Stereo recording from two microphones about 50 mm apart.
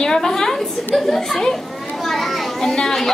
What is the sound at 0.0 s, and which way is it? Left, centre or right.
A woman's voice, centre.